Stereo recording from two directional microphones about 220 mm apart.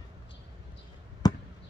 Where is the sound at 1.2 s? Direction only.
15° left (ahead or behind).